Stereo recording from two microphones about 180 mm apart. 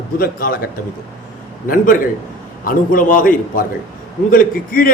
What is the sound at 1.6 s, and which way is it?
A man's voice, 50° left (ahead or behind).